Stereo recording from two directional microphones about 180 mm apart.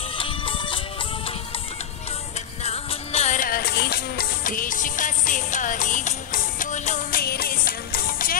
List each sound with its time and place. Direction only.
0.2 s music: 30° left (ahead or behind)
2.6 s music: 35° left (ahead or behind); by 8.4 s 55° left (ahead or behind)